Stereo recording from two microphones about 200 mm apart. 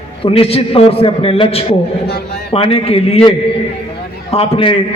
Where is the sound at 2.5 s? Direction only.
30° left (ahead or behind).